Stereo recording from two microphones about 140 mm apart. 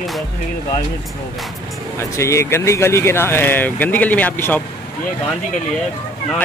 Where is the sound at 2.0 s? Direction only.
20° left (ahead or behind).